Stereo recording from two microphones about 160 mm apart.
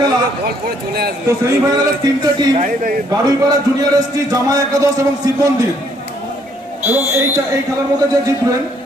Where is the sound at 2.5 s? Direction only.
55° right (ahead or behind).